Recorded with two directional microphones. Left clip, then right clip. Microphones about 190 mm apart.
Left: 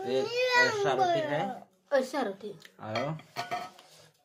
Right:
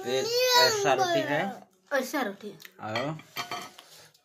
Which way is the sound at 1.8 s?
20° left (ahead or behind).